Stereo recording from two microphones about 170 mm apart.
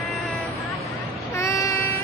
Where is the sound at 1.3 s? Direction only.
20° left (ahead or behind).